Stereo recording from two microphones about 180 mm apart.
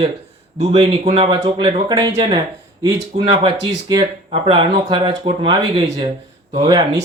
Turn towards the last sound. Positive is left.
turn(degrees=-25)  # may be behind; listen again after turning